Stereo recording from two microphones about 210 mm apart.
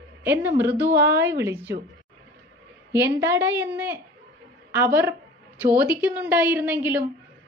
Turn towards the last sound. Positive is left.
turn(degrees=-10)  # may be behind; listen again after turning